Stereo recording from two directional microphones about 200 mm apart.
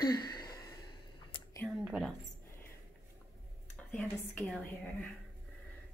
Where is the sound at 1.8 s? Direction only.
5° right (ahead or behind).